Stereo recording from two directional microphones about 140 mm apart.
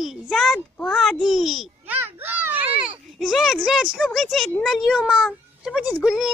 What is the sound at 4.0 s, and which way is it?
A child's voice, centre (ahead or behind).